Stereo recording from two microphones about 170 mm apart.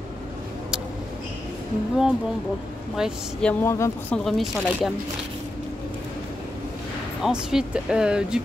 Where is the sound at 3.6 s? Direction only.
15° left (ahead or behind).